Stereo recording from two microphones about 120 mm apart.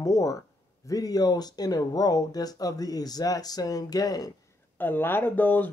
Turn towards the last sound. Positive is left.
turn(degrees=15)  # may be behind; listen again after turning